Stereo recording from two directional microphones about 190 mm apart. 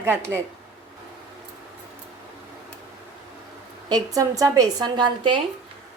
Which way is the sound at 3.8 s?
20° right (ahead or behind).